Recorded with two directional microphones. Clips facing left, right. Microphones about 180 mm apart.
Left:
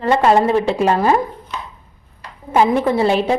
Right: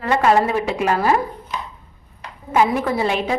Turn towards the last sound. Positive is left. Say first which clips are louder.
# left 5 dB
turn(degrees=30)  # may be behind; listen again after turning